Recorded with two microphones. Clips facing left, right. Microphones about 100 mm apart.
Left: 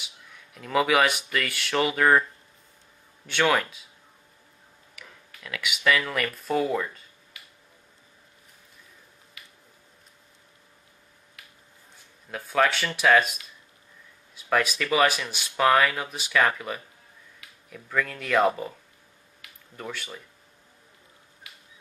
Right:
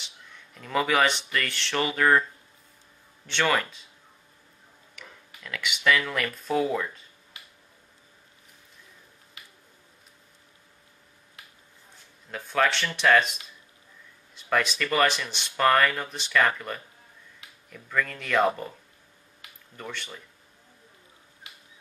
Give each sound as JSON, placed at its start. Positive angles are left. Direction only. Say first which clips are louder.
{"t": 0.0, "sound": "speech", "louder": "even", "side_deg": 5}
{"t": 3.3, "sound": "speech", "louder": "left 2 dB", "side_deg": 5}
{"t": 4.9, "sound": "speech", "louder": "right 1 dB", "side_deg": 5}
{"t": 7.3, "sound": "a sound", "louder": "right 1 dB", "side_deg": -25}
{"t": 12.3, "sound": "speech", "louder": "left 1 dB", "side_deg": 5}